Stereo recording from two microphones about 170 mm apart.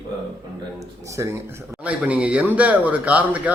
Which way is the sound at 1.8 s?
5° right (ahead or behind).